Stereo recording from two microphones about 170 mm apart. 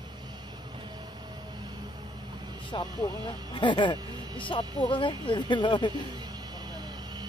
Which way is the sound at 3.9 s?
25° right (ahead or behind).